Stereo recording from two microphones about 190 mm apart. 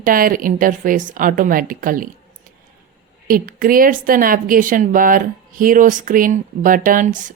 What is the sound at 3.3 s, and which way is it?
Speech, 50° right (ahead or behind).